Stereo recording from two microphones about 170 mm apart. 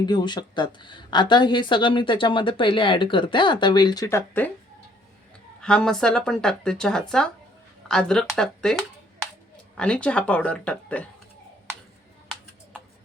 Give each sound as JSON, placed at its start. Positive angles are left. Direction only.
{"t": 0.0, "sound": "a woman's voice", "side_deg": 25}
{"t": 5.5, "sound": "speech", "side_deg": 5}
{"t": 9.7, "sound": "speech", "side_deg": 5}